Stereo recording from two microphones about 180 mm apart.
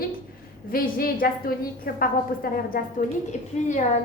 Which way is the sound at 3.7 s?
40° left (ahead or behind).